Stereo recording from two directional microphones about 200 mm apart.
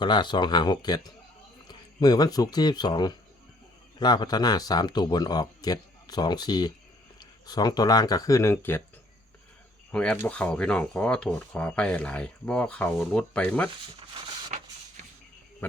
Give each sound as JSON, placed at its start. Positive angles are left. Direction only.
{"t": 0.0, "sound": "speech", "side_deg": 25}
{"t": 9.9, "sound": "speech", "side_deg": 5}